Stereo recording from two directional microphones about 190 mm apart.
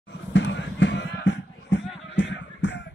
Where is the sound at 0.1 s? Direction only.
70° left (ahead or behind).